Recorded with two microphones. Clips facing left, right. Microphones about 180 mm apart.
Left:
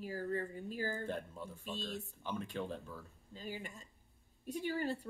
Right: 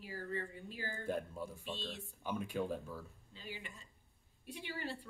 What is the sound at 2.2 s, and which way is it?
Speech, 10° right (ahead or behind).